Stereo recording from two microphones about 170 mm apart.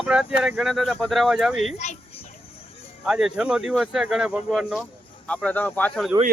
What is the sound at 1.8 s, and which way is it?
Speech, 45° left (ahead or behind).